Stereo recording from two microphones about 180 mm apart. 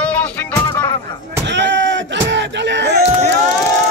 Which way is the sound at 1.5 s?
80° right.